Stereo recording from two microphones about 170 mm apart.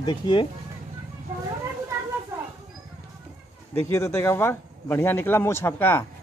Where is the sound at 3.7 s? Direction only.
15° left (ahead or behind).